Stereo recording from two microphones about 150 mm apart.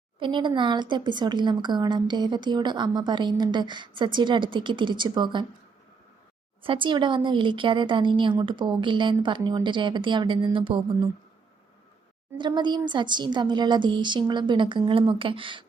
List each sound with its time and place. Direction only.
0.2 s speech: 35° right (ahead or behind)
6.6 s speech: 35° right (ahead or behind)
12.4 s speech: 30° right (ahead or behind)